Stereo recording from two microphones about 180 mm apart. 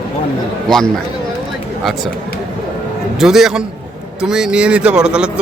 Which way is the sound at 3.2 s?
Centre (ahead or behind).